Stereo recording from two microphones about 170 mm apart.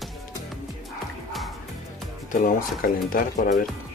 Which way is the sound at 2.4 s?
55° left (ahead or behind).